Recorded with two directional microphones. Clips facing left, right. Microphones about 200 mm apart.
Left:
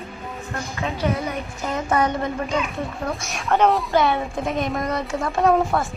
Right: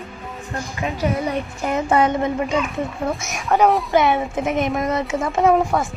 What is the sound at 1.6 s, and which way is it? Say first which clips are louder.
Speech: right 3 dB; 25° right (ahead or behind).